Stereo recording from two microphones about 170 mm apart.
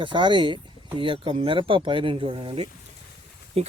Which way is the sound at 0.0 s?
30° right (ahead or behind).